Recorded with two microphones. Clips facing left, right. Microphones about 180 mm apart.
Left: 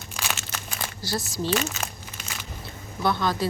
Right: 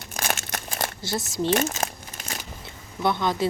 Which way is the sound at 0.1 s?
50° right (ahead or behind).